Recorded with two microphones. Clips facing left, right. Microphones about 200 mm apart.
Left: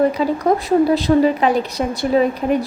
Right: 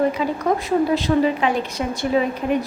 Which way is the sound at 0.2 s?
35° left (ahead or behind).